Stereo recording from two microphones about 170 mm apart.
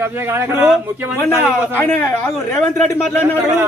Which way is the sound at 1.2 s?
15° left (ahead or behind).